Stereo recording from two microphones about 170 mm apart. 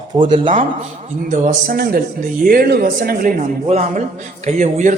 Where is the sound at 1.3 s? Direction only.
50° right (ahead or behind).